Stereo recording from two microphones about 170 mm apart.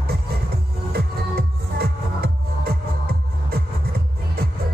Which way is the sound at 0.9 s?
70° right (ahead or behind).